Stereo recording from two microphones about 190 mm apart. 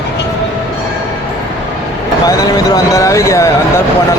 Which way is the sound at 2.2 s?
20° left (ahead or behind).